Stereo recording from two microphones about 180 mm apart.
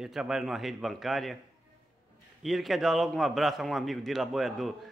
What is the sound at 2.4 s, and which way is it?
A man's voice, centre (ahead or behind).